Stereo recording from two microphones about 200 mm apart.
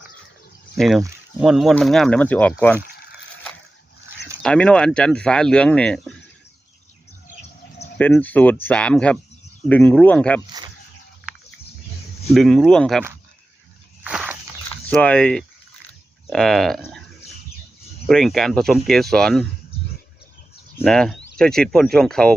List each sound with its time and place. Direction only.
0.8 s speech: centre (ahead or behind)
4.4 s speech: 5° left (ahead or behind)
7.9 s speech: 10° left (ahead or behind)
11.3 s a sound: 5° right (ahead or behind)
12.3 s speech: centre (ahead or behind)
14.0 s walk: 5° right (ahead or behind)
14.8 s speech: 5° left (ahead or behind)
18.1 s speech: centre (ahead or behind)
20.8 s speech: centre (ahead or behind)